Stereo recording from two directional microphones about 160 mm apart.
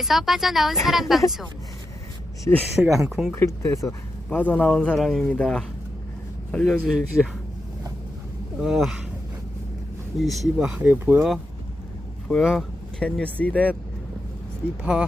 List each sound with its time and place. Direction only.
0.0 s speech: centre (ahead or behind)
2.6 s speech: 10° right (ahead or behind)
3.3 s speech: 15° left (ahead or behind); by 7.3 s centre (ahead or behind)
8.6 s speech: centre (ahead or behind)
10.2 s speech: centre (ahead or behind)
12.3 s speech: centre (ahead or behind)